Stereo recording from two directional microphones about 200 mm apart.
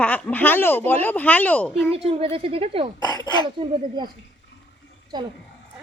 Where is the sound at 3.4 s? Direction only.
25° right (ahead or behind).